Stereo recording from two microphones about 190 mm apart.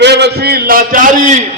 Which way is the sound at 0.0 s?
60° right (ahead or behind).